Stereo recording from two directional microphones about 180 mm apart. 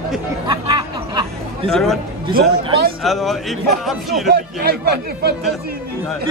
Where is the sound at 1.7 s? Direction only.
Centre (ahead or behind).